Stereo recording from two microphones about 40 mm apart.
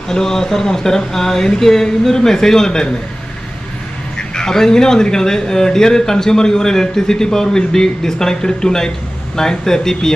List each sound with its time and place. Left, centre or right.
0.1 s a man's voice: centre
4.4 s a man's voice: centre